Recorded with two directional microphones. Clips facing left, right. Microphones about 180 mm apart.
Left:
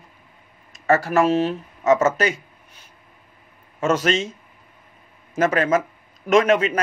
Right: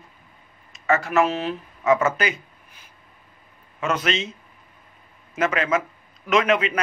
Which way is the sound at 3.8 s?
45° left (ahead or behind).